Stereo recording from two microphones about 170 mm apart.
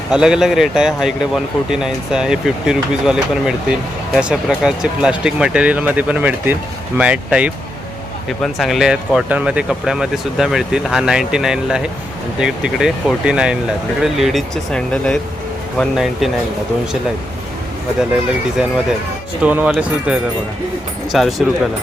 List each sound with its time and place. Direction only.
0.1 s speech: 5° right (ahead or behind)
18.1 s speech: 5° right (ahead or behind)